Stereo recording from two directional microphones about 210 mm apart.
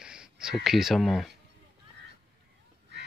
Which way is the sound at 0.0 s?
5° right (ahead or behind).